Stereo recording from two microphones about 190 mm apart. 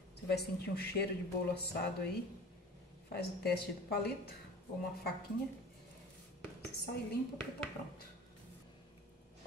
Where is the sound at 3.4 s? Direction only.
55° left (ahead or behind).